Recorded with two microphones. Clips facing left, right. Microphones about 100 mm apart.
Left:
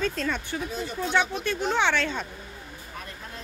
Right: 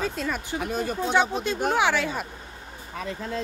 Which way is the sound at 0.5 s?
55° right (ahead or behind).